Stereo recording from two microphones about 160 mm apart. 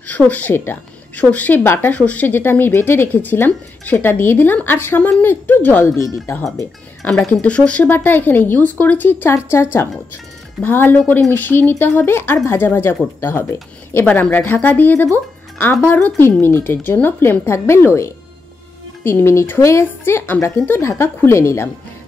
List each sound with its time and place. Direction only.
0.0 s speech: 10° left (ahead or behind)